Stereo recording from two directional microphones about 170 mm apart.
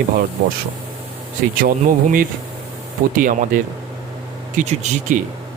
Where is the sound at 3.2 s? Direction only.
50° right (ahead or behind).